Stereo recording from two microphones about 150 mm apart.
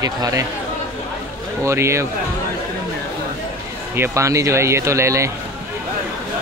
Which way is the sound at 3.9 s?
15° right (ahead or behind).